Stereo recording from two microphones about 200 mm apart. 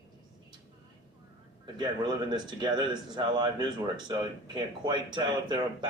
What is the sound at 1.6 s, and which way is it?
Speech, 20° right (ahead or behind).